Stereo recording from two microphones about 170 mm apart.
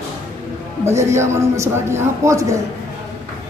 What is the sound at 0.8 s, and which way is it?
A man's voice, 15° right (ahead or behind).